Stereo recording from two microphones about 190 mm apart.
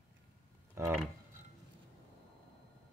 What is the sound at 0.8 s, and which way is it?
Speech, 15° right (ahead or behind).